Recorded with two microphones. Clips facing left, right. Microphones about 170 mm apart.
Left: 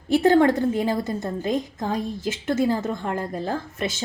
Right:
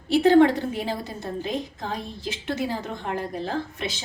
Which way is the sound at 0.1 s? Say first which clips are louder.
Even; 45° left (ahead or behind).